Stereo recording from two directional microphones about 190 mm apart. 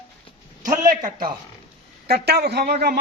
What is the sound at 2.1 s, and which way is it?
Speech, 60° right (ahead or behind).